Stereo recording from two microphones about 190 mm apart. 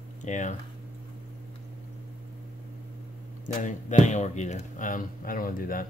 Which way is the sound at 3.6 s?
40° left (ahead or behind).